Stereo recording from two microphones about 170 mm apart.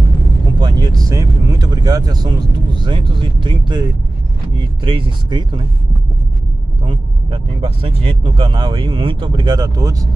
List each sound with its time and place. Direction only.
0.6 s vehicle: 25° right (ahead or behind)
4.6 s speech: 30° right (ahead or behind)
6.8 s speech: 30° right (ahead or behind)